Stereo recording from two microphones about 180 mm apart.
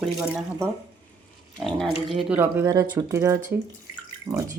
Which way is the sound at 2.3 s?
10° right (ahead or behind).